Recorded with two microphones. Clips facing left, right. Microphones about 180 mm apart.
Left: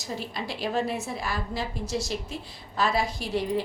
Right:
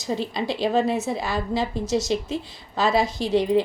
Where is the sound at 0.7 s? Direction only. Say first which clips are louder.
Right 5 dB; 20° right (ahead or behind).